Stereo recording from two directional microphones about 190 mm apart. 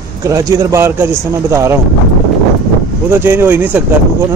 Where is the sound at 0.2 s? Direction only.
15° right (ahead or behind).